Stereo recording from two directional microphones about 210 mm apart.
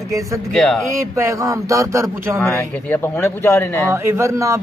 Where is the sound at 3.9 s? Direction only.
10° right (ahead or behind).